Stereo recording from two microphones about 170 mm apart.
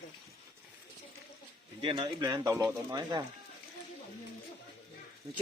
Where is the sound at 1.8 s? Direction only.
30° right (ahead or behind).